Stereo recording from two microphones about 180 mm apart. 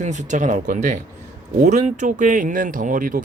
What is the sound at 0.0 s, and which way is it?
Speech, 40° right (ahead or behind).